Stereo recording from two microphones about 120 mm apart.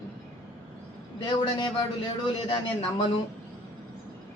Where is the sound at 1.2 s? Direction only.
40° left (ahead or behind).